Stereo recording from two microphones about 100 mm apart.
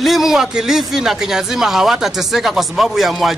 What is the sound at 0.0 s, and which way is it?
Speech, centre (ahead or behind).